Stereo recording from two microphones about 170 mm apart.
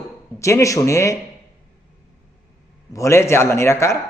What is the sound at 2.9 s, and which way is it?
A man's voice, 15° left (ahead or behind).